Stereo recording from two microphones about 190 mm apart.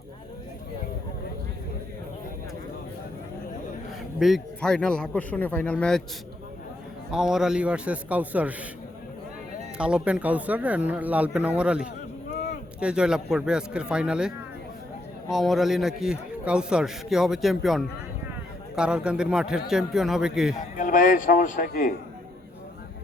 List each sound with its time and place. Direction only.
4.2 s a man's voice: centre (ahead or behind)
7.1 s a man's voice: 5° right (ahead or behind)
9.7 s a man's voice: 5° right (ahead or behind)
20.7 s a man's voice: 45° left (ahead or behind)